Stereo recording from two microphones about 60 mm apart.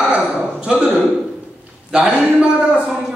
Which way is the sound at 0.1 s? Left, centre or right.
Centre.